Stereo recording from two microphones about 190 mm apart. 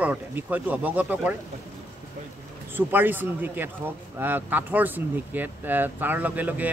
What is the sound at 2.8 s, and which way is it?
Speech, 10° right (ahead or behind).